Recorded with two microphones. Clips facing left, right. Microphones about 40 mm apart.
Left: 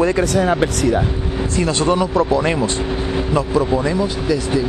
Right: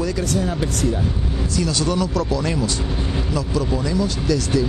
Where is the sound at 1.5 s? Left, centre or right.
Left.